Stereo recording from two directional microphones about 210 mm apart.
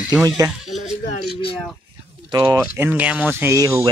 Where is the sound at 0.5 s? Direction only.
Centre (ahead or behind).